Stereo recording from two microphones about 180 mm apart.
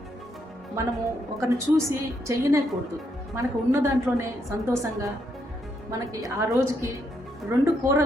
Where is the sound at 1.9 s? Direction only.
15° right (ahead or behind).